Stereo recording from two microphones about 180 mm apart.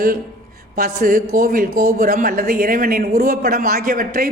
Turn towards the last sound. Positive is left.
turn(degrees=-50)  # may be behind; listen again after turning